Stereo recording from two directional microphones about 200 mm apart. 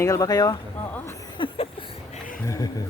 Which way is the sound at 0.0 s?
15° left (ahead or behind).